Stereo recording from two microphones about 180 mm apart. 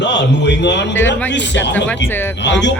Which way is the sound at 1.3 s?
80° left.